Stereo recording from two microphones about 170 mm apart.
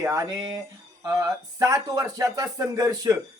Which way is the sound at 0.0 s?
15° right (ahead or behind).